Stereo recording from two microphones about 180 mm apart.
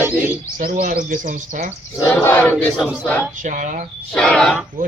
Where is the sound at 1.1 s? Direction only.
45° right (ahead or behind).